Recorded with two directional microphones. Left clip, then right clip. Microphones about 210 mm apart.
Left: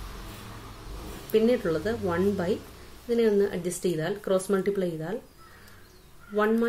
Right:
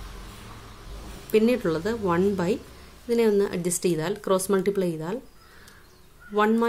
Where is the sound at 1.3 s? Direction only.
45° right (ahead or behind).